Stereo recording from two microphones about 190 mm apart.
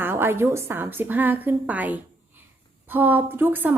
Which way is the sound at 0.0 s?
10° right (ahead or behind).